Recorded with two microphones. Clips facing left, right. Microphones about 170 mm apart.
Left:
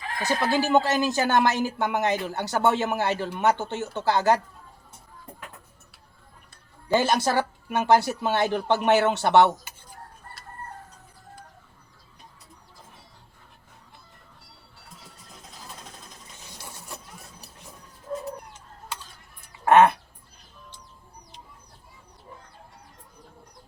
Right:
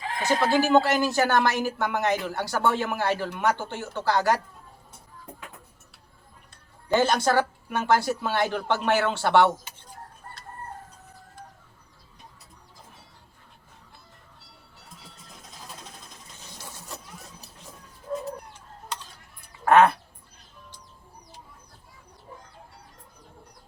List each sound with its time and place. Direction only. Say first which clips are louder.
0.0 s speech: right 2 dB; 20° right (ahead or behind)
0.7 s speech: right 1 dB; 15° left (ahead or behind)
7.3 s speech: right 2 dB; 15° left (ahead or behind)
16.6 s printer: even; 15° left (ahead or behind)
19.6 s duck: left 1 dB; 20° left (ahead or behind)